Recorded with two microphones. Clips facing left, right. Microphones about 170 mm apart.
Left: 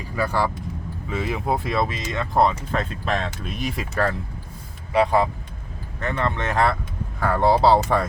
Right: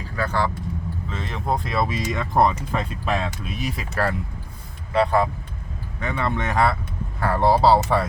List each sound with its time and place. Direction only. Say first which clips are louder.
0.0 s speech: left 1 dB; 10° left (ahead or behind)
1.9 s speech: right 2 dB; 15° right (ahead or behind)
4.9 s speech: left 1 dB; 15° left (ahead or behind)
6.0 s speech: even; 10° right (ahead or behind)